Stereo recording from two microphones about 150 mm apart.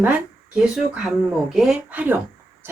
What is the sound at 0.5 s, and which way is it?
Speech, 5° right (ahead or behind).